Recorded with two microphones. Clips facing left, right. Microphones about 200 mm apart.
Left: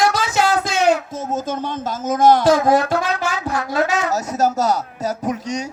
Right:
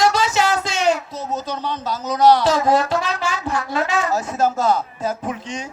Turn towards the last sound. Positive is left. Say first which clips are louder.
# left 4 dB
turn(degrees=40)  # may be behind; listen again after turning